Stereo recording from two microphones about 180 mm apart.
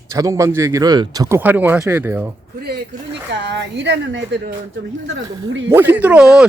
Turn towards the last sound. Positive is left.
turn(degrees=-5)  # may be behind; listen again after turning